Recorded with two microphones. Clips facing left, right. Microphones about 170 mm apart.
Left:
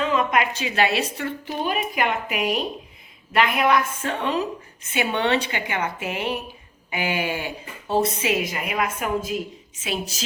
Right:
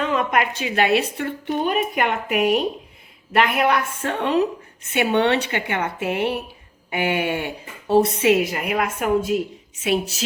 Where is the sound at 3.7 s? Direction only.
60° right (ahead or behind).